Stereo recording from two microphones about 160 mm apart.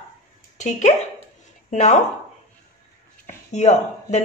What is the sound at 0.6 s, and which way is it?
Speech, 50° left (ahead or behind).